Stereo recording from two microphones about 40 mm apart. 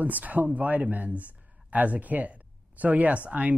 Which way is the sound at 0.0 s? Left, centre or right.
Right.